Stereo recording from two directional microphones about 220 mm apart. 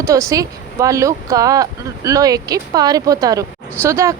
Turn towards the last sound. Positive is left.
turn(degrees=-15)  # may be behind; listen again after turning